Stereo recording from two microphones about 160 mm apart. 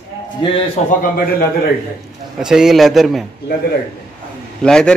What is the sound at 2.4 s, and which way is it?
Speech, 5° right (ahead or behind).